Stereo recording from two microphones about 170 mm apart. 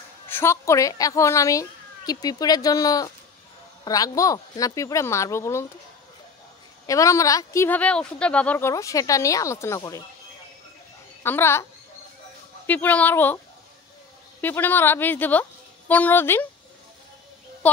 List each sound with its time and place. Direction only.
0.3 s a woman's voice: 15° left (ahead or behind)
6.9 s a woman's voice: 20° left (ahead or behind)
11.2 s a woman's voice: 15° left (ahead or behind)
12.6 s a woman's voice: 10° left (ahead or behind)
14.4 s a woman's voice: 10° left (ahead or behind)